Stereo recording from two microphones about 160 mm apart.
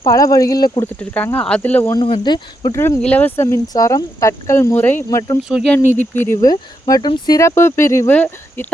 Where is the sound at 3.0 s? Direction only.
10° left (ahead or behind).